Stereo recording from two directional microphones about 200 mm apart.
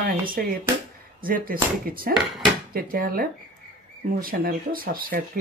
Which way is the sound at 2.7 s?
45° right (ahead or behind).